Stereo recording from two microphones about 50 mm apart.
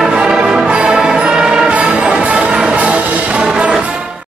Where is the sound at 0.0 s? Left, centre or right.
Centre.